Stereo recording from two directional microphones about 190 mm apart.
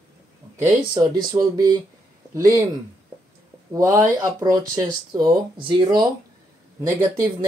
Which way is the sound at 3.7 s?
15° right (ahead or behind).